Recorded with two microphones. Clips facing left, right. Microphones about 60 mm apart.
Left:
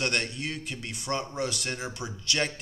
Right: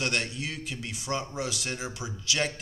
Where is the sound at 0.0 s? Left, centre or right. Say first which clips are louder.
Left 1 dB; centre.